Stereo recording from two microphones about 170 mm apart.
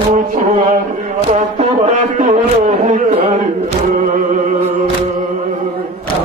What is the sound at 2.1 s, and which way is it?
Music, 45° right (ahead or behind).